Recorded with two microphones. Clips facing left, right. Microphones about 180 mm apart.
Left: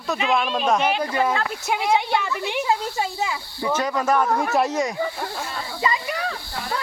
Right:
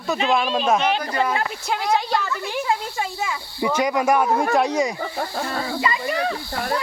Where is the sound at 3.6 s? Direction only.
10° right (ahead or behind).